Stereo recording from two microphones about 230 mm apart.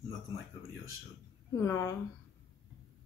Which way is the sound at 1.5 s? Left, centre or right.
Centre.